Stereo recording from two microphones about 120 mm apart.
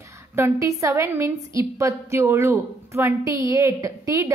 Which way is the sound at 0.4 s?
25° right (ahead or behind).